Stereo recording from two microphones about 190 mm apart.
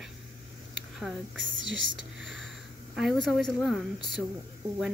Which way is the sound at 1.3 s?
80° right.